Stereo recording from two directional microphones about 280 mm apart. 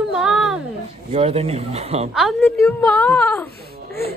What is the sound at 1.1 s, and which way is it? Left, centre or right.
Speech, right.